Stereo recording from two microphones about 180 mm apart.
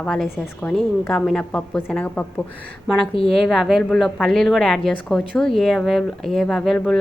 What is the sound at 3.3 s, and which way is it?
A woman's voice, centre (ahead or behind).